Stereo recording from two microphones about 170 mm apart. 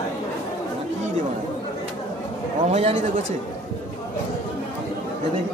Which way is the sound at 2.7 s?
45° right (ahead or behind).